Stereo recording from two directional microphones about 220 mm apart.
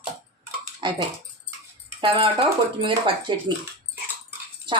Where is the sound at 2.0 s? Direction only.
25° right (ahead or behind).